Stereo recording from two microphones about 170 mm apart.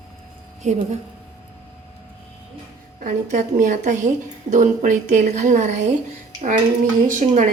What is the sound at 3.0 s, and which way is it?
A woman's voice, 50° right (ahead or behind).